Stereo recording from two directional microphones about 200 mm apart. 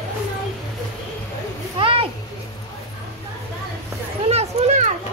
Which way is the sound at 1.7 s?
25° right (ahead or behind).